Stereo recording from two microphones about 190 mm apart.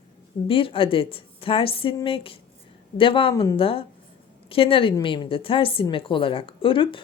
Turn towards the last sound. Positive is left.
turn(degrees=25)  # may be behind; listen again after turning